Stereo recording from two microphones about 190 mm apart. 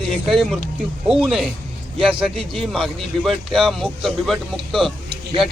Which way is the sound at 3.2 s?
Centre (ahead or behind).